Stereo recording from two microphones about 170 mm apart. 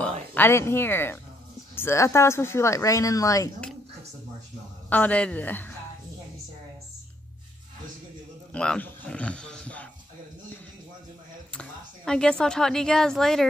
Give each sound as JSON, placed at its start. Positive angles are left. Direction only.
{"t": 0.3, "sound": "speech", "side_deg": 15}
{"t": 4.8, "sound": "speech", "side_deg": 10}
{"t": 8.5, "sound": "a sound", "side_deg": 5}
{"t": 11.5, "sound": "speech", "side_deg": 5}